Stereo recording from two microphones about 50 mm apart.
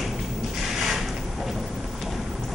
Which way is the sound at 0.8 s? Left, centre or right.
Centre.